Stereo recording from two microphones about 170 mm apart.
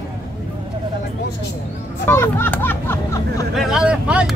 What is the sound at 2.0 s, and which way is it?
Speech, 15° left (ahead or behind).